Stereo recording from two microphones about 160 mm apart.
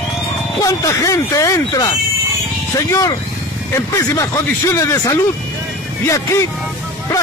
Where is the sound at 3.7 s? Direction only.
20° left (ahead or behind).